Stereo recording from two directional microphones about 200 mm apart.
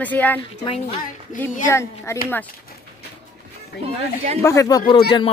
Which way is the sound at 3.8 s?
30° right (ahead or behind).